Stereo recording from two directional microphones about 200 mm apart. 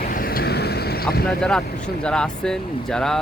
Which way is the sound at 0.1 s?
45° left (ahead or behind).